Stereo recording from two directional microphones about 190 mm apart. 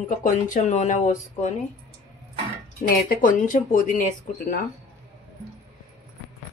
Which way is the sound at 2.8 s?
45° left (ahead or behind).